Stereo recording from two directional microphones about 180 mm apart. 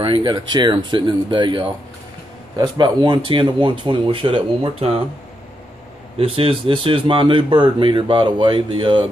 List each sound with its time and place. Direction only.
0.0 s a man's voice: 25° right (ahead or behind)
6.1 s a man's voice: 30° right (ahead or behind)